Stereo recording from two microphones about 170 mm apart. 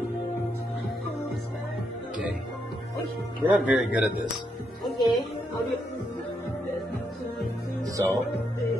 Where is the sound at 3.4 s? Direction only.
10° right (ahead or behind).